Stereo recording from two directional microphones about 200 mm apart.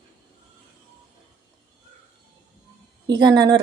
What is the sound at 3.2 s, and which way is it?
Speech, 20° right (ahead or behind).